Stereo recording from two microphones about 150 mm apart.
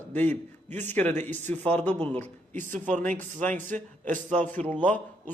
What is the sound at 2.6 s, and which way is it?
Speech, 60° right (ahead or behind).